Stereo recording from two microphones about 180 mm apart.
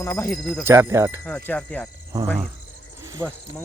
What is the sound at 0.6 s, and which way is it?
Speech, 15° right (ahead or behind).